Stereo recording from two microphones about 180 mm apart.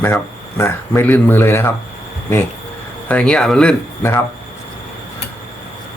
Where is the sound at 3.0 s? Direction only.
5° left (ahead or behind).